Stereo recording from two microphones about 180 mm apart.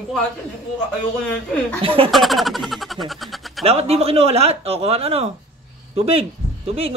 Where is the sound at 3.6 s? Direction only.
35° right (ahead or behind).